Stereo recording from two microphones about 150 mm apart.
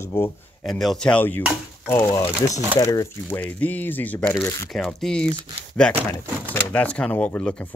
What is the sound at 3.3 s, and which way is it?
Speech, 10° left (ahead or behind).